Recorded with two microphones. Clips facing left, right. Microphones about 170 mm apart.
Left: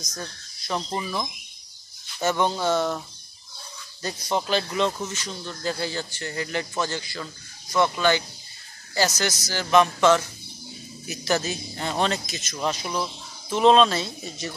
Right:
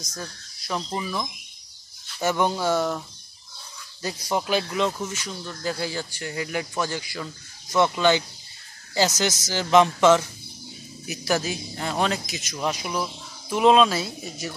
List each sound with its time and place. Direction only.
0.0 s speech: 5° right (ahead or behind)
2.2 s speech: 10° right (ahead or behind)
4.0 s speech: 10° right (ahead or behind)